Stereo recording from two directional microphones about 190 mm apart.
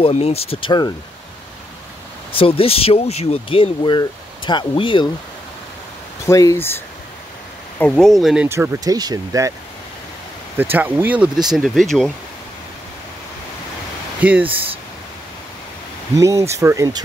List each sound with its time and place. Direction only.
0.0 s speech: 30° left (ahead or behind)
2.3 s speech: 30° left (ahead or behind)
6.2 s speech: 15° left (ahead or behind)
7.8 s speech: 5° left (ahead or behind)
8.5 s speech: 15° right (ahead or behind)
10.6 s speech: 10° right (ahead or behind)
14.2 s speech: 10° right (ahead or behind)
16.2 s speech: 15° right (ahead or behind)